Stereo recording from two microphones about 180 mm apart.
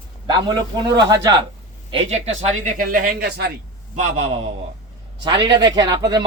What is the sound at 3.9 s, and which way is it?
Speech, 40° right (ahead or behind).